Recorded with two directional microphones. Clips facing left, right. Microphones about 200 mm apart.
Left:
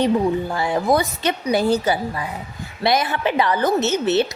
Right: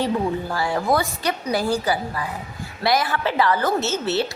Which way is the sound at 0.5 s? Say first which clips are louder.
Left 2 dB; 20° left (ahead or behind).